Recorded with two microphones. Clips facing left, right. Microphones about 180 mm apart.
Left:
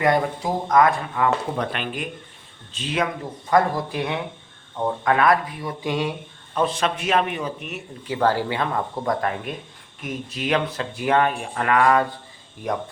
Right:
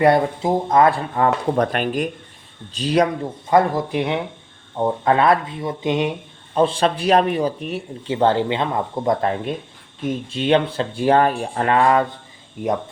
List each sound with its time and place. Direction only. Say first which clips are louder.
0.0 s speech: right 5 dB; 30° right (ahead or behind)
3.5 s speech: right 3 dB; 20° right (ahead or behind)